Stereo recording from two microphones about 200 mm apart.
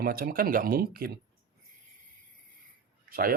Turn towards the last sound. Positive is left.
turn(degrees=-45)  # may be behind; listen again after turning